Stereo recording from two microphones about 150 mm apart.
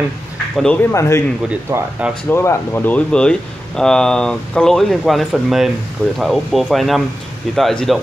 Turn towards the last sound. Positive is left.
turn(degrees=0)  # may be behind; listen again after turning